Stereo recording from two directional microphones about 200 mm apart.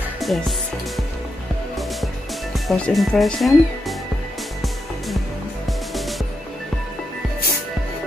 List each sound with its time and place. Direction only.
0.2 s music: centre (ahead or behind)
2.5 s speech: centre (ahead or behind)
5.9 s music: centre (ahead or behind)